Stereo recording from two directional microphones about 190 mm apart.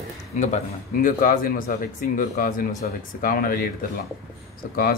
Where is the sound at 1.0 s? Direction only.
50° left (ahead or behind).